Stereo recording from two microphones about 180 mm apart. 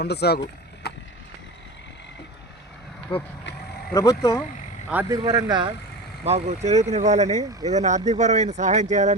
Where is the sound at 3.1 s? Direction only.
30° left (ahead or behind).